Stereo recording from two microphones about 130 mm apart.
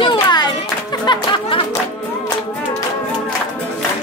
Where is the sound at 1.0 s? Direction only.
40° left (ahead or behind).